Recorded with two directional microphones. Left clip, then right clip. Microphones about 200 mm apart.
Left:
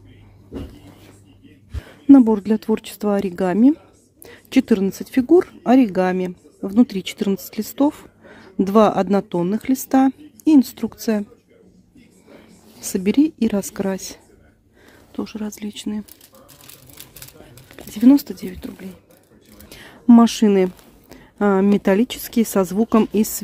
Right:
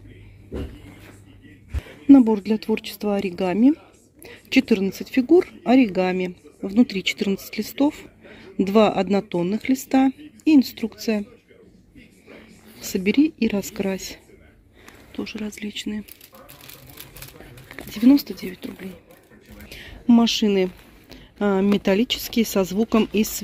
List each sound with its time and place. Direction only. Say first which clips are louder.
2.0 s speech: left 2 dB; 20° left (ahead or behind)
12.8 s speech: left 2 dB; 20° left (ahead or behind)
17.9 s speech: left 3 dB; 20° left (ahead or behind)
19.7 s a sound: left 5 dB; 20° left (ahead or behind)
22.3 s speech: left 2 dB; 20° left (ahead or behind)